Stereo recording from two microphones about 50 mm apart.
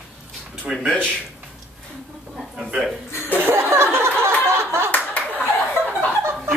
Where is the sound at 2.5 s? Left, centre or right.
Centre.